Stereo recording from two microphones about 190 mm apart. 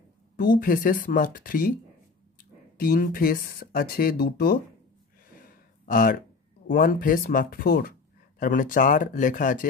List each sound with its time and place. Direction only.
0.4 s speech: 50° left (ahead or behind)
2.8 s speech: 50° left (ahead or behind)
5.9 s speech: 45° left (ahead or behind)